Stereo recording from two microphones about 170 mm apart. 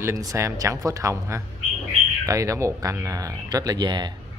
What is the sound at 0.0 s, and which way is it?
A man's voice, 20° right (ahead or behind).